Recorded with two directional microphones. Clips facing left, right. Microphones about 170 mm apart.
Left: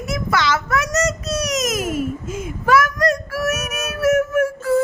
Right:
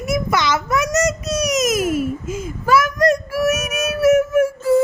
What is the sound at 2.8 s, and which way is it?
Child singing, 15° right (ahead or behind).